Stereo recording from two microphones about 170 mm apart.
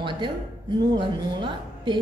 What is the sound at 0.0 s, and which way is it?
A woman's voice, 25° right (ahead or behind).